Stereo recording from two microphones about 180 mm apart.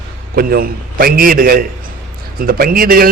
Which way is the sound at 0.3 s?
55° right (ahead or behind).